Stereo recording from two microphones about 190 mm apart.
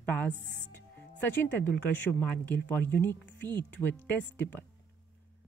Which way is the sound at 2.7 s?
10° left (ahead or behind).